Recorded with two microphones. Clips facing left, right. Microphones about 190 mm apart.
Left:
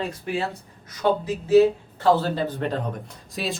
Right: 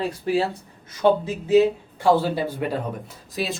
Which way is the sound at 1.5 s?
15° right (ahead or behind).